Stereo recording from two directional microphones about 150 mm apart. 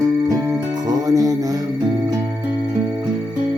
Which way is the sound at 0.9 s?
25° right (ahead or behind).